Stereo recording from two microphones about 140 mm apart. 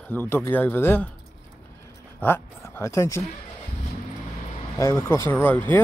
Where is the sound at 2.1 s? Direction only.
15° left (ahead or behind).